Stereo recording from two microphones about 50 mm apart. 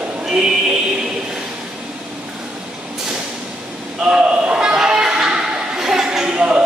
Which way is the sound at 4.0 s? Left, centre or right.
Centre.